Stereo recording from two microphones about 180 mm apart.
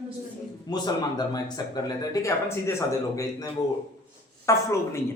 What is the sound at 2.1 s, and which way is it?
Speech, 15° left (ahead or behind).